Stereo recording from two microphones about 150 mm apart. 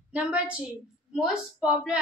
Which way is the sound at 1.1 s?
5° right (ahead or behind).